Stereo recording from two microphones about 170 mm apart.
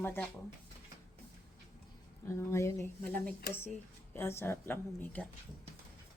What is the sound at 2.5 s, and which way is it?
A woman's voice, 15° left (ahead or behind).